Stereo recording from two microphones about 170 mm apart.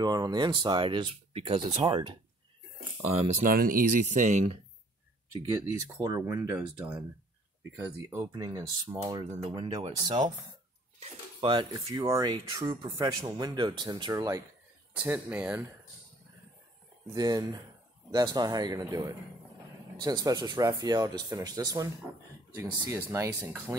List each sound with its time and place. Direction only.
0.0 s speech: 25° right (ahead or behind)
3.4 s speech: 55° right (ahead or behind)
5.5 s speech: 15° right (ahead or behind)
11.0 s speech: 30° right (ahead or behind); by 15.6 s 10° right (ahead or behind)
17.1 s speech: 20° right (ahead or behind)